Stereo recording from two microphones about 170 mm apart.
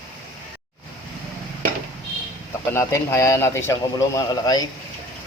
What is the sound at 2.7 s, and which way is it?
A man's voice, 15° left (ahead or behind).